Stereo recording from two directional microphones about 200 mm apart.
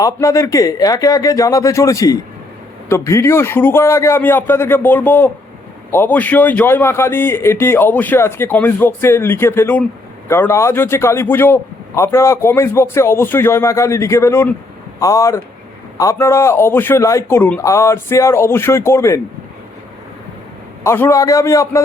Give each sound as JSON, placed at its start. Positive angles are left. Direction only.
{"t": 0.0, "sound": "a man's voice", "side_deg": 15}
{"t": 20.8, "sound": "a man's voice", "side_deg": 10}